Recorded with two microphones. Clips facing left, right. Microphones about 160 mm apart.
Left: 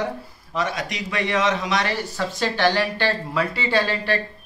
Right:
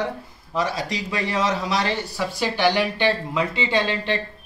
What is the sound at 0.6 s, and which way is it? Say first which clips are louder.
Speech: right 1 dB; 30° right (ahead or behind).